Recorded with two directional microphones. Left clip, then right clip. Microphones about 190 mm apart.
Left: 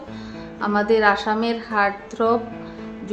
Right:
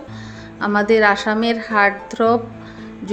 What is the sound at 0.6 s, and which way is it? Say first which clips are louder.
A woman's voice: right 3 dB; 20° right (ahead or behind).